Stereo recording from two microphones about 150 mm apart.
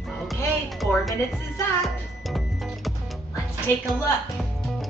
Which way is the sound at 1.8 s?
Centre (ahead or behind).